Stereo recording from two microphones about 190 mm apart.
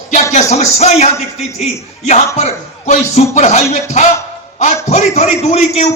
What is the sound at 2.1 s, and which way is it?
A man's voice, 35° left (ahead or behind).